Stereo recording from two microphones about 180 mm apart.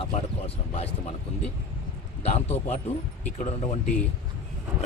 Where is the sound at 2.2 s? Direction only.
35° left (ahead or behind).